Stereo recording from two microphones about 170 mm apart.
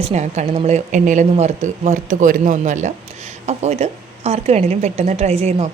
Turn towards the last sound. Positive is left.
turn(degrees=-40)  # may be behind; listen again after turning